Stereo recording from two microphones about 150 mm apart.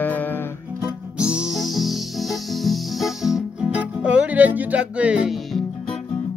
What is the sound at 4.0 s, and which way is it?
Speech, 10° right (ahead or behind).